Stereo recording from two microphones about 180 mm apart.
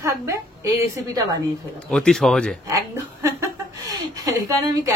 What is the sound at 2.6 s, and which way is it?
A woman's voice, 15° right (ahead or behind).